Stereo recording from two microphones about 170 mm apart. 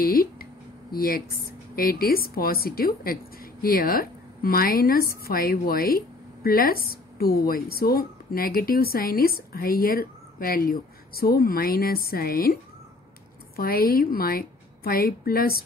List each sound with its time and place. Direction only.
0.0 s a sound: 60° left (ahead or behind)
0.9 s a woman's voice: 60° left (ahead or behind)
13.6 s a woman's voice: 60° left (ahead or behind)